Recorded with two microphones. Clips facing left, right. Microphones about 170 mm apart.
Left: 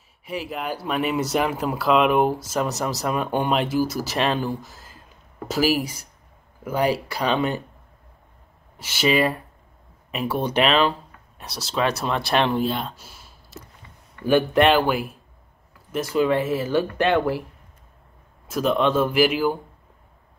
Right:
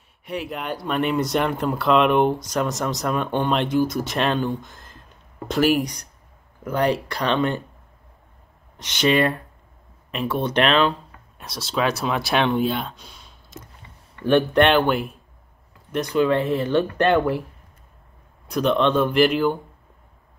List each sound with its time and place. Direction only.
0.2 s speech: centre (ahead or behind)
8.7 s speech: 5° left (ahead or behind)
18.5 s speech: 5° left (ahead or behind)